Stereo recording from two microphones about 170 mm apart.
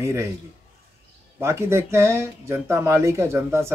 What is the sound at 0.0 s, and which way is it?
Speech, 15° right (ahead or behind).